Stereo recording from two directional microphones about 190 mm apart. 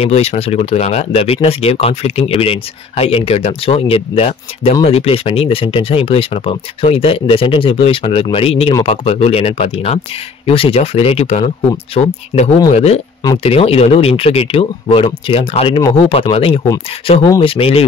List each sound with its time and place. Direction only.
0.0 s speech: 35° left (ahead or behind)